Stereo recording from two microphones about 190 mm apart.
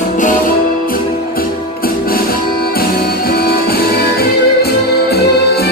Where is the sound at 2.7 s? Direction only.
55° left (ahead or behind).